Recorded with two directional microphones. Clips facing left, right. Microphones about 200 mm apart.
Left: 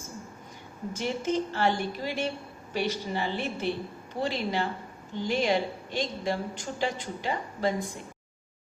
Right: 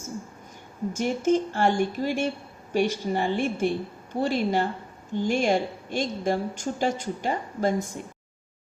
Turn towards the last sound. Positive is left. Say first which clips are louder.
# right 3 dB
turn(degrees=-45)  # may be behind; listen again after turning